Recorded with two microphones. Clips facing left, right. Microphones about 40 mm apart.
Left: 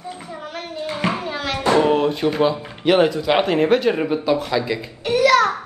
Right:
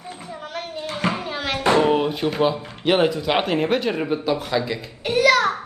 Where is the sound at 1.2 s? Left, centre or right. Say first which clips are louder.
Left 1 dB; centre.